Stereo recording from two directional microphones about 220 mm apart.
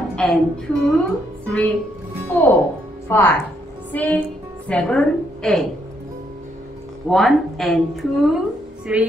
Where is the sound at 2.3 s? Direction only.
5° left (ahead or behind).